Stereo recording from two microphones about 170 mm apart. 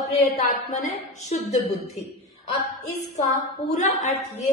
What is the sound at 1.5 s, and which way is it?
Speech, centre (ahead or behind).